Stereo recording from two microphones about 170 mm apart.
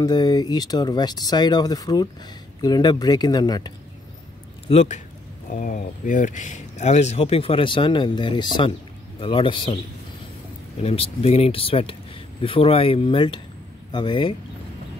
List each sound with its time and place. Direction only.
0.0 s speech: 25° left (ahead or behind)
4.6 s speech: 40° left (ahead or behind)
5.5 s speech: 50° left (ahead or behind); by 9.8 s 30° left (ahead or behind)
10.8 s speech: 35° left (ahead or behind)